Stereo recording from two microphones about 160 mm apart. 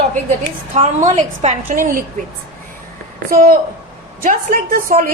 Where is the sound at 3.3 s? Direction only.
60° right (ahead or behind).